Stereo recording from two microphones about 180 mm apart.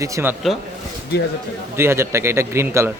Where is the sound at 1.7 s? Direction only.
15° right (ahead or behind).